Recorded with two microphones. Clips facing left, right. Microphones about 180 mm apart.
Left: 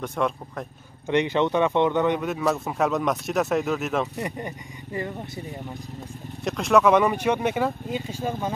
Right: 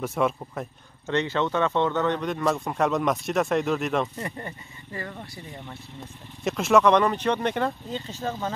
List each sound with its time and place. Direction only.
0.0 s speech: 5° right (ahead or behind)
1.0 s speech: 15° left (ahead or behind)
4.2 s speech: 15° left (ahead or behind)
6.4 s speech: centre (ahead or behind)